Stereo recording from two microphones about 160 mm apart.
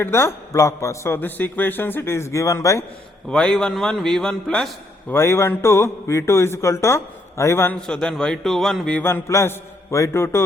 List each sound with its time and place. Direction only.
0.0 s a man's voice: 15° left (ahead or behind)
3.2 s a man's voice: 5° left (ahead or behind)